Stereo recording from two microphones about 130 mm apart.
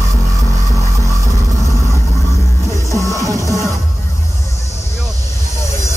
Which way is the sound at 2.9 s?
25° left (ahead or behind).